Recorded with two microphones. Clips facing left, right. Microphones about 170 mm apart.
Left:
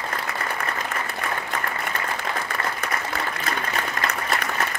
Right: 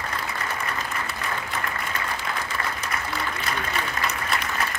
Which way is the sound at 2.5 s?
55° left (ahead or behind).